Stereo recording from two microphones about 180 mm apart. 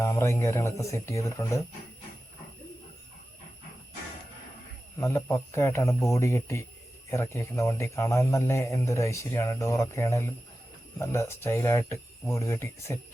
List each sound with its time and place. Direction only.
0.0 s speech: 15° left (ahead or behind)
4.9 s speech: 15° left (ahead or behind)